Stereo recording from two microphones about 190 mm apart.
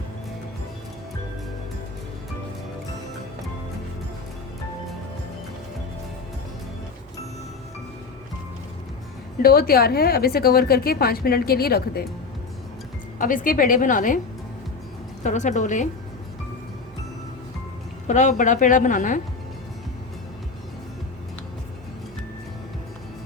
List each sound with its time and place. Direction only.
9.4 s a woman's voice: 50° left (ahead or behind)
13.1 s a woman's voice: 45° left (ahead or behind)
15.2 s a woman's voice: 40° left (ahead or behind)
18.1 s a woman's voice: 40° left (ahead or behind)